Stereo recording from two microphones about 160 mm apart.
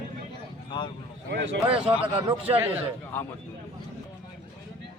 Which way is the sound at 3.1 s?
10° left (ahead or behind).